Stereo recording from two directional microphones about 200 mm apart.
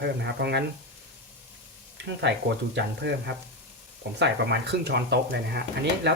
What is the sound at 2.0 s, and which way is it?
Speech, 60° right (ahead or behind).